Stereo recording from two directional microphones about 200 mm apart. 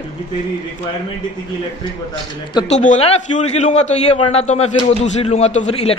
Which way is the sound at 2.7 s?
35° left (ahead or behind).